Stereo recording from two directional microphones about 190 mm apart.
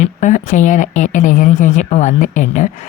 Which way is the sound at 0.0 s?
40° left (ahead or behind).